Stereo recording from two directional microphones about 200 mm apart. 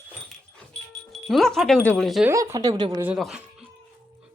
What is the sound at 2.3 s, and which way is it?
Speech, 15° right (ahead or behind).